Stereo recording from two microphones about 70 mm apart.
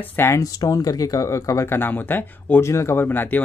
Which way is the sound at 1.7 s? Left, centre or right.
Left.